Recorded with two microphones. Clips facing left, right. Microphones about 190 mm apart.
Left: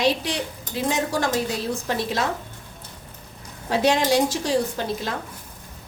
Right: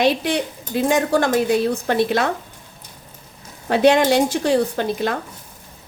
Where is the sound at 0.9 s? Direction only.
55° right (ahead or behind).